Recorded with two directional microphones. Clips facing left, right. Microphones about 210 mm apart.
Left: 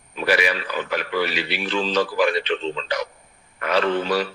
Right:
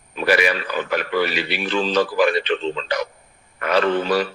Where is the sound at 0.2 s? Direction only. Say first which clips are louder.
Right 3 dB; 50° right (ahead or behind).